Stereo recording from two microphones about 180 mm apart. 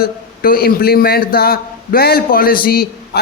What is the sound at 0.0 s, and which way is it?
A man's voice, 55° left (ahead or behind).